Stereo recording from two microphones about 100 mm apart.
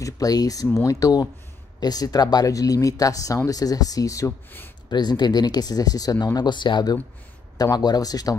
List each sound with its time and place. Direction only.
0.0 s speech: 40° left (ahead or behind)
4.8 s speech: 45° left (ahead or behind)